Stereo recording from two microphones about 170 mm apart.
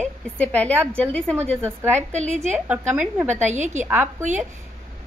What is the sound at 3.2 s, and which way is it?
Speech, 45° right (ahead or behind).